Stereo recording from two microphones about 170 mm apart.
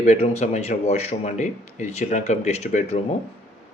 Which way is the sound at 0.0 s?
40° left (ahead or behind).